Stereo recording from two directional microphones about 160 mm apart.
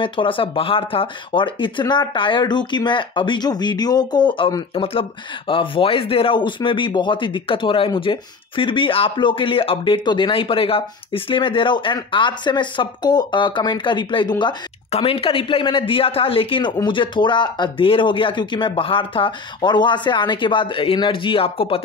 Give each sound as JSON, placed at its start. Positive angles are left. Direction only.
{"t": 0.0, "sound": "speech", "side_deg": 30}